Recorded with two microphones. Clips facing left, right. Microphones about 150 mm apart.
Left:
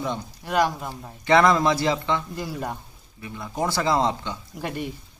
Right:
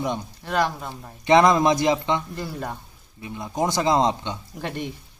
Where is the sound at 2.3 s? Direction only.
10° left (ahead or behind).